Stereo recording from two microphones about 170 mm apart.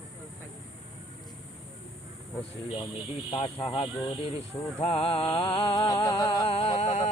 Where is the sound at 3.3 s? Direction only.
35° left (ahead or behind).